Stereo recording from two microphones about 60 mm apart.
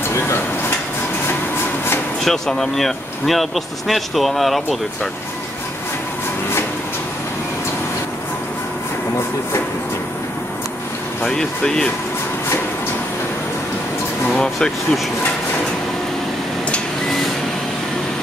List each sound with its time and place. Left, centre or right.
0.1 s a sound: left
2.2 s speech: centre
11.2 s speech: centre
14.3 s speech: centre